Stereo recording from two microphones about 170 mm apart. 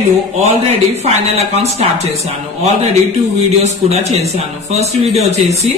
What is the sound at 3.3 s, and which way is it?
Speech, 40° right (ahead or behind).